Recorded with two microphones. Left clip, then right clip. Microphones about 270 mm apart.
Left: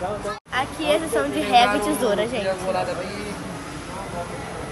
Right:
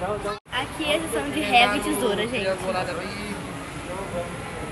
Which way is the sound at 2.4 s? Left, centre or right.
Left.